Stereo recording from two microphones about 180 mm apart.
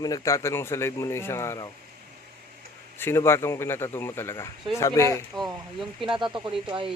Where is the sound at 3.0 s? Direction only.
15° left (ahead or behind).